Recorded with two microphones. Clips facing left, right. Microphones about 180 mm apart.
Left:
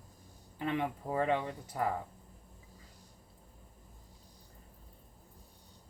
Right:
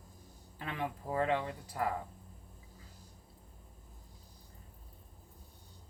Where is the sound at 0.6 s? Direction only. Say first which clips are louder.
Left 5 dB; 20° left (ahead or behind).